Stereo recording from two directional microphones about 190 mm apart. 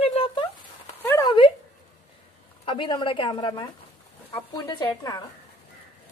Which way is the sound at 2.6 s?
25° left (ahead or behind).